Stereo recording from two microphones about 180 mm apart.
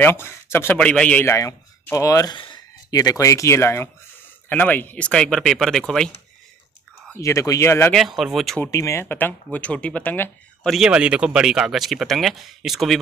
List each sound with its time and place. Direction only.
0.0 s a man's voice: 15° left (ahead or behind)
7.2 s a man's voice: 15° left (ahead or behind)
7.9 s speech: centre (ahead or behind)
8.5 s a man's voice: 15° left (ahead or behind)
10.7 s speech: 5° right (ahead or behind)